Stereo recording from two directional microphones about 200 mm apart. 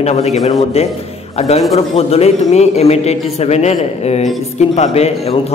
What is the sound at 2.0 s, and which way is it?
A man's voice, 30° left (ahead or behind).